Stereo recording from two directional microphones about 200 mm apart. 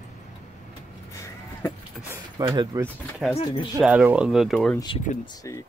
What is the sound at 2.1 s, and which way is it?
Speech, 20° right (ahead or behind).